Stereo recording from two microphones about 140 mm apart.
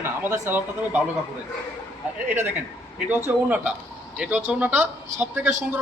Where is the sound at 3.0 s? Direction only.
15° right (ahead or behind).